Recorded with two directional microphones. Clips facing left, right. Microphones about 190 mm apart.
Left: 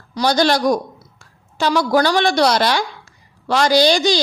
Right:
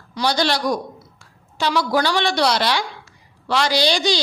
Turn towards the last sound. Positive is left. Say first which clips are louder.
# left 5 dB
turn(degrees=45)  # may be behind; listen again after turning